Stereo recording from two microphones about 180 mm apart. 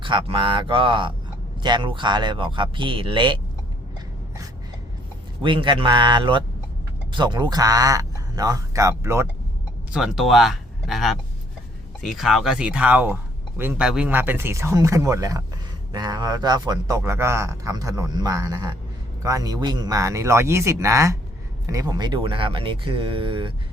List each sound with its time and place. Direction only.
0.0 s speech: 30° right (ahead or behind)
5.4 s speech: 25° right (ahead or behind)
9.9 s speech: 5° right (ahead or behind); by 23.6 s 30° right (ahead or behind)